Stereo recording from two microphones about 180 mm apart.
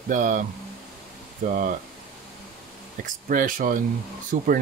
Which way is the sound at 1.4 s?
45° right (ahead or behind).